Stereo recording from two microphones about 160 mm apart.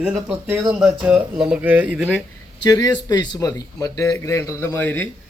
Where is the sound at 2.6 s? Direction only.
25° left (ahead or behind).